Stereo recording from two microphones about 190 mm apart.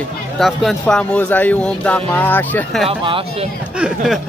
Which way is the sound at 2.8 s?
30° right (ahead or behind).